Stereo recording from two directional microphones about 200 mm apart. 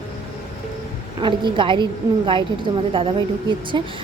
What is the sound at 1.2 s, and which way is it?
Speech, 25° right (ahead or behind).